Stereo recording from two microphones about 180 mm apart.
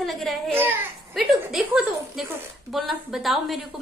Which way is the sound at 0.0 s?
Centre (ahead or behind).